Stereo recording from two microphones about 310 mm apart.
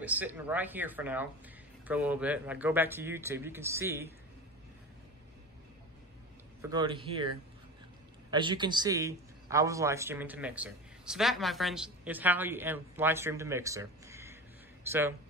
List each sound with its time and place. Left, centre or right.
0.0 s a man's voice: centre
6.6 s a man's voice: centre